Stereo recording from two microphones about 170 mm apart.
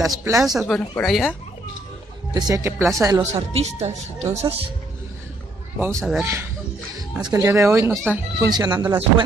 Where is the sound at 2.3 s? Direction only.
20° right (ahead or behind).